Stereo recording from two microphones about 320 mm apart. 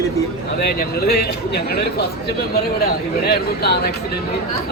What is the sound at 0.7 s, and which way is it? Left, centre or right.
Speech, left.